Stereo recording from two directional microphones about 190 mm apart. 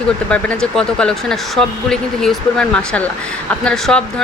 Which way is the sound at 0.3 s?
5° left (ahead or behind).